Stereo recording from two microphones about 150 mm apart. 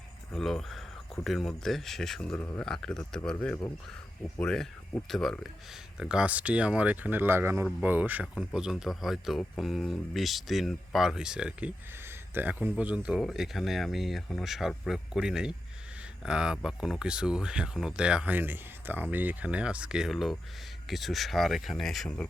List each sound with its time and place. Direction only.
0.3 s speech: 5° left (ahead or behind)
4.4 s speech: 5° left (ahead or behind)